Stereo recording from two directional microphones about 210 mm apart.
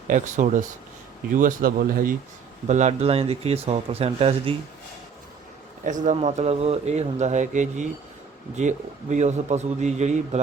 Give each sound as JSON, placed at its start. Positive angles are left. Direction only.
{"t": 0.1, "sound": "speech", "side_deg": -35}
{"t": 5.8, "sound": "speech", "side_deg": -35}